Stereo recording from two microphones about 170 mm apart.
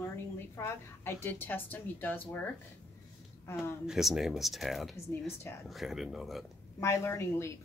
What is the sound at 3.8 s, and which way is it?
Speech, centre (ahead or behind).